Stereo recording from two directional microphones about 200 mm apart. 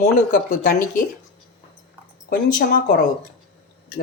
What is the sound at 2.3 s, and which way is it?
Speech, 40° left (ahead or behind).